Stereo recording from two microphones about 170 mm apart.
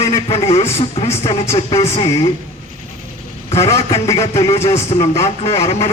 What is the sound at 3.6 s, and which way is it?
Speech, 20° left (ahead or behind).